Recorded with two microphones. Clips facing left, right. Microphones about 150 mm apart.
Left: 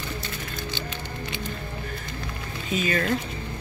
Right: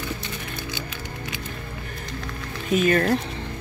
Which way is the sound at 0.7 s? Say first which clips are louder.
Even; 5° right (ahead or behind).